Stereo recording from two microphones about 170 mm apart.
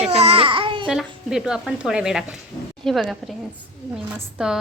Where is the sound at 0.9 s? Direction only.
5° right (ahead or behind).